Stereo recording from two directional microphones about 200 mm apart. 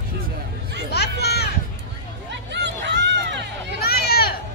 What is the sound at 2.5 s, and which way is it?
Hubbub, 60° right (ahead or behind).